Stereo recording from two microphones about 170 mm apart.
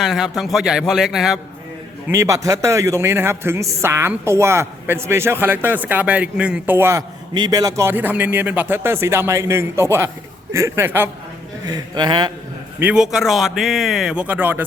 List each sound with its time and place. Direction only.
0.0 s a man's voice: centre (ahead or behind)
2.0 s a man's voice: 15° right (ahead or behind)
7.3 s a man's voice: 25° right (ahead or behind)
11.6 s a man's voice: 25° right (ahead or behind)
12.8 s a man's voice: 5° right (ahead or behind)